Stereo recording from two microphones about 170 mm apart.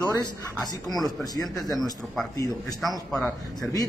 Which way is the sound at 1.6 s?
Centre (ahead or behind).